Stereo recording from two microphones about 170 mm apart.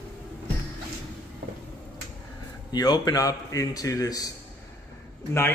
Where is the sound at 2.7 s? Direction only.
25° left (ahead or behind).